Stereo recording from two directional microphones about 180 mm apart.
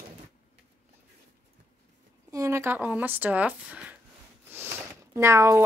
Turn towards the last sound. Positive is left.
turn(degrees=-15)  # may be behind; listen again after turning